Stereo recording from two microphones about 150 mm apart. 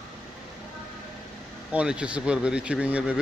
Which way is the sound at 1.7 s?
5° right (ahead or behind).